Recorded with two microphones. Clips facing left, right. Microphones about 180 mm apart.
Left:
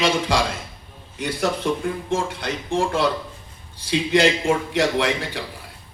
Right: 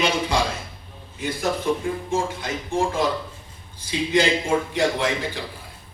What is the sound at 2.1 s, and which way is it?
A man's voice, 65° left (ahead or behind).